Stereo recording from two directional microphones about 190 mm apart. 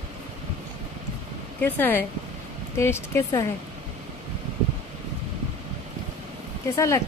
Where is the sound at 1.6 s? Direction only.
10° left (ahead or behind).